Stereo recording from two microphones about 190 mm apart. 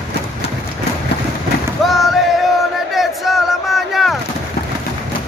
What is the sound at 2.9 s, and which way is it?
Crowd, centre (ahead or behind).